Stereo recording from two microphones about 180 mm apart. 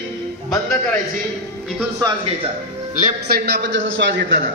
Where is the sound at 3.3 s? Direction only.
65° right (ahead or behind).